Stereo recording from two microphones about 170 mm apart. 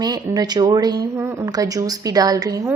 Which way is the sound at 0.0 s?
25° right (ahead or behind).